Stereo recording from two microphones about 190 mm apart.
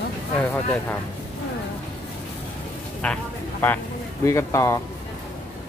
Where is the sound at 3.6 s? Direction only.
15° left (ahead or behind).